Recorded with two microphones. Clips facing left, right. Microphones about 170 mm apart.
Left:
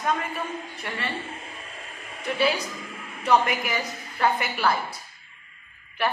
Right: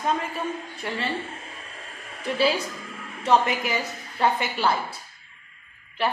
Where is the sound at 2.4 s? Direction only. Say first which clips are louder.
Right 1 dB; 30° right (ahead or behind).